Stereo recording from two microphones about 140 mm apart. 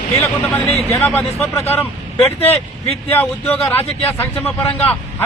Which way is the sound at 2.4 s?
45° left (ahead or behind).